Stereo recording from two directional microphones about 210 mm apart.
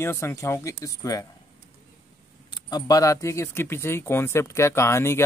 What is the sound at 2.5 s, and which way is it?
Speech, 20° left (ahead or behind).